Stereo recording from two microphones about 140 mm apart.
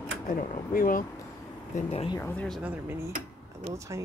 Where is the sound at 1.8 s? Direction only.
50° left (ahead or behind).